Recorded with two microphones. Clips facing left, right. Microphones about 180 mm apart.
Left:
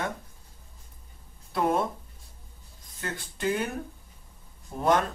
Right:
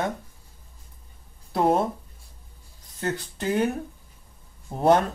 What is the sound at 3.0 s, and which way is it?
Speech, 40° right (ahead or behind).